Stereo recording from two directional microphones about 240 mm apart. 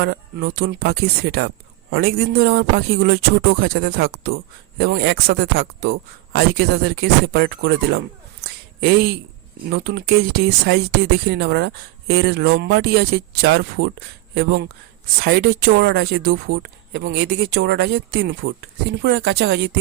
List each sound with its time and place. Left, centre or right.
0.0 s speech: right
8.8 s speech: right
9.6 s speech: right